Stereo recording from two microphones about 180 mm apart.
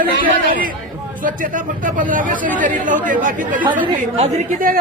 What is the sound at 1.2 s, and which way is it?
A woman's voice, 50° right (ahead or behind).